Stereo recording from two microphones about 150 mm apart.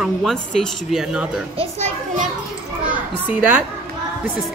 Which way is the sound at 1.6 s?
50° right (ahead or behind).